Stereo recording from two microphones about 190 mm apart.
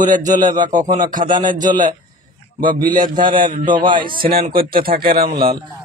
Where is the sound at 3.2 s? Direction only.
25° right (ahead or behind).